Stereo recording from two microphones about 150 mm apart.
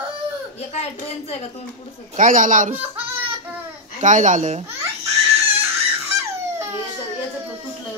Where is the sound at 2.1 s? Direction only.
60° right (ahead or behind).